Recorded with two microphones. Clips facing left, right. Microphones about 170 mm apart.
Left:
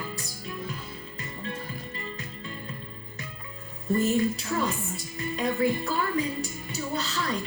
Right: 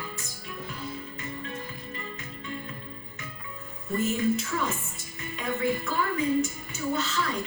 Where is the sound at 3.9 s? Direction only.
35° left (ahead or behind).